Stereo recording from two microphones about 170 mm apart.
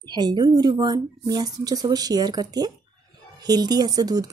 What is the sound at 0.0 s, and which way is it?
A woman's voice, 25° right (ahead or behind).